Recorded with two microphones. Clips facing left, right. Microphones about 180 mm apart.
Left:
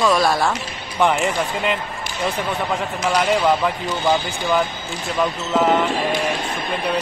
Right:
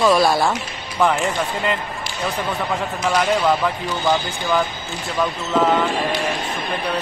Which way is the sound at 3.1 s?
10° left (ahead or behind).